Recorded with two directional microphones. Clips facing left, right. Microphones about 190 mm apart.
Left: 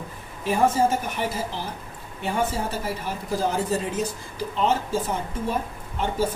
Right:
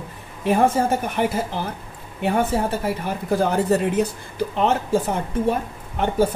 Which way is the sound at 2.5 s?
60° right (ahead or behind).